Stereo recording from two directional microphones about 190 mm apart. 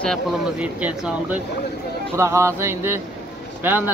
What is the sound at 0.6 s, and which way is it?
Speech, 5° right (ahead or behind).